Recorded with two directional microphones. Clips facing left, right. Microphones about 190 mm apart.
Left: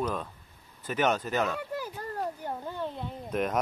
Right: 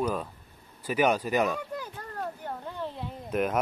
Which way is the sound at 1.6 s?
5° left (ahead or behind).